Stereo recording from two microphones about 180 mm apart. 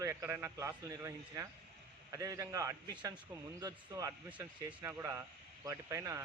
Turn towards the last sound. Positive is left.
turn(degrees=-15)  # may be behind; listen again after turning